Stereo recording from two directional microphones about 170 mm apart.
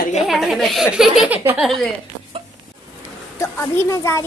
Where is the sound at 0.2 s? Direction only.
Centre (ahead or behind).